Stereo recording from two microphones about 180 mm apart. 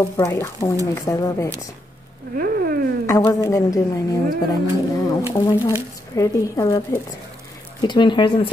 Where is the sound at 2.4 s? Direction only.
55° right (ahead or behind).